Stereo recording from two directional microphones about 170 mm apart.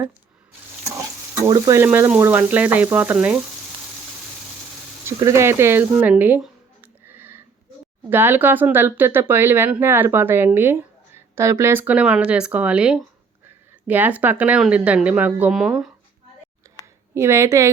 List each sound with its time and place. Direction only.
1.5 s speech: 20° right (ahead or behind)
5.0 s a sound: 15° right (ahead or behind)
8.1 s speech: 10° right (ahead or behind)
17.2 s speech: 15° right (ahead or behind)